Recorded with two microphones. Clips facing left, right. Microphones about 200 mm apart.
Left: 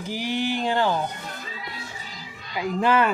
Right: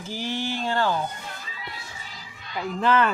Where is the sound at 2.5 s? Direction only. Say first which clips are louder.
Left 1 dB; 10° left (ahead or behind).